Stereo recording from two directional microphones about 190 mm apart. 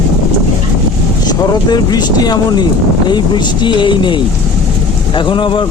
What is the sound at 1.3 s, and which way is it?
Speech, 20° left (ahead or behind).